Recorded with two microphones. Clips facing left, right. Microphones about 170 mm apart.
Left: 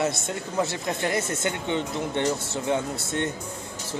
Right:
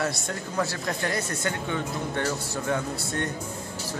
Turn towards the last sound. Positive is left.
turn(degrees=20)  # may be behind; listen again after turning